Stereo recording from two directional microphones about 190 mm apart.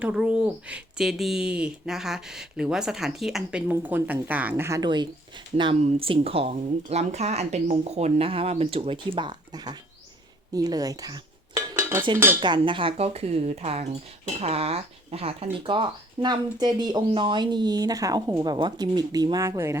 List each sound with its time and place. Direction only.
0.0 s a woman's voice: 5° right (ahead or behind)
11.7 s dishes: 15° right (ahead or behind)
12.4 s a woman's voice: 25° right (ahead or behind)